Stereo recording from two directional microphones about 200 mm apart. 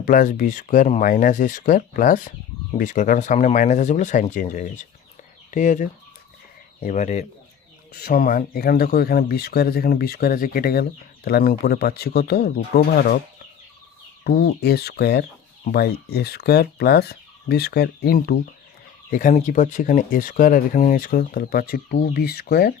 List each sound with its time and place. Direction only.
0.0 s speech: 40° left (ahead or behind)
7.9 s speech: 50° left (ahead or behind)
14.3 s speech: 55° left (ahead or behind)
19.1 s speech: 40° left (ahead or behind)